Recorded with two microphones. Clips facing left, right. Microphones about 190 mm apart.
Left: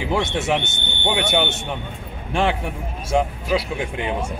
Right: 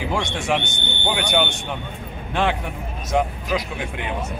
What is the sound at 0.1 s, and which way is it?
Speech, 20° left (ahead or behind).